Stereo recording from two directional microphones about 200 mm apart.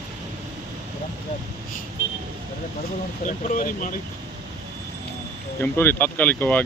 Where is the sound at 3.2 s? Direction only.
40° left (ahead or behind).